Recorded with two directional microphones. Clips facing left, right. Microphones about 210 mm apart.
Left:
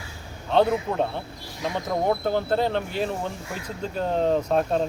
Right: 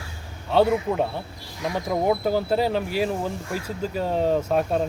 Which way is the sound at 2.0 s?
10° right (ahead or behind).